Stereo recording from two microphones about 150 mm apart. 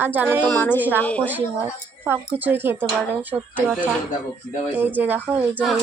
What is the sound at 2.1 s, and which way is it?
Speech, 15° right (ahead or behind).